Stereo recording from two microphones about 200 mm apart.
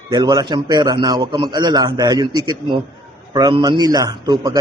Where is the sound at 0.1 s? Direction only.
20° right (ahead or behind).